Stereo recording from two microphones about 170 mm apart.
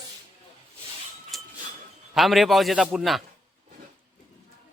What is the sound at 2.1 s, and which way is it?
A man's voice, centre (ahead or behind).